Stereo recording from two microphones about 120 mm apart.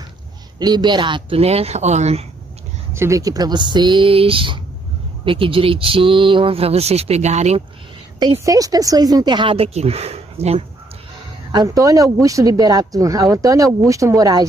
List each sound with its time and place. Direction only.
0.6 s speech: 35° right (ahead or behind)
1.4 s speech: 60° right (ahead or behind)
2.9 s speech: 25° right (ahead or behind); by 7.6 s 70° right (ahead or behind)
8.5 s speech: 30° right (ahead or behind)
9.8 s speech: 60° right (ahead or behind)
11.5 s speech: 30° right (ahead or behind)